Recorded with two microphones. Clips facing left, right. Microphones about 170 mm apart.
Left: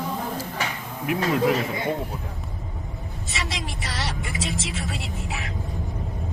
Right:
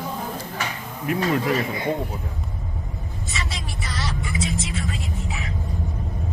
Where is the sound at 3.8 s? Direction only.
70° left (ahead or behind).